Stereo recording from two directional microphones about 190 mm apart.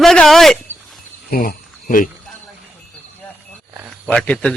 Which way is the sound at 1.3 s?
50° left (ahead or behind).